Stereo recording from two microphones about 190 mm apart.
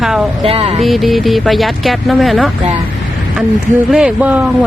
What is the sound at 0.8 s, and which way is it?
Speech, centre (ahead or behind).